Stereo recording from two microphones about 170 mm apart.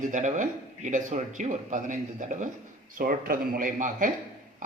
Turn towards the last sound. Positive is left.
turn(degrees=-50)  # may be behind; listen again after turning